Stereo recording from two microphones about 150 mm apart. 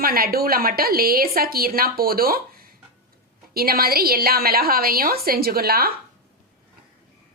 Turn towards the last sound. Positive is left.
turn(degrees=-90)